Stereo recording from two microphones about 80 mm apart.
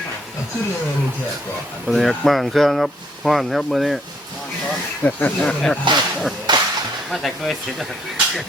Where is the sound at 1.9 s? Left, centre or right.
Centre.